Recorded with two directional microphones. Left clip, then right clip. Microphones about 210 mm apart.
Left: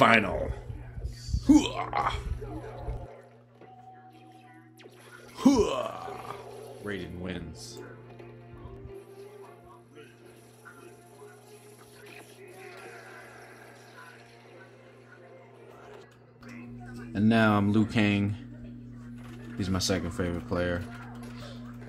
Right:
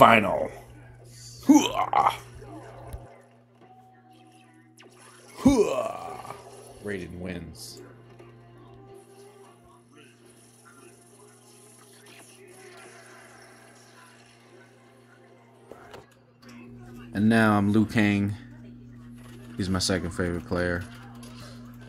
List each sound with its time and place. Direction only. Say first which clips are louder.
0.0 s speech: right 5 dB; 15° right (ahead or behind)
5.3 s a sound: right 2 dB; 10° right (ahead or behind)
6.8 s speech: right 3 dB; 10° right (ahead or behind)
7.5 s music: left 1 dB; 10° left (ahead or behind)
12.6 s music: left 3 dB; 15° left (ahead or behind)
17.1 s speech: right 2 dB; 10° right (ahead or behind)
19.6 s speech: right 3 dB; 10° right (ahead or behind)